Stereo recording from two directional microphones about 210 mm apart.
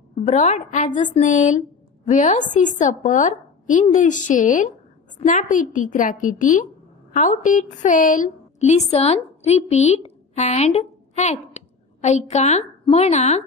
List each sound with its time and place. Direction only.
0.2 s a woman's voice: 35° left (ahead or behind)